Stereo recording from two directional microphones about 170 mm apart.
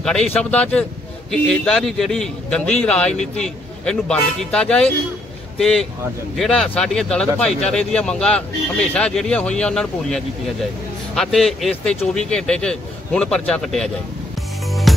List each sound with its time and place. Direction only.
0.0 s speech: 5° left (ahead or behind)
14.7 s music: centre (ahead or behind)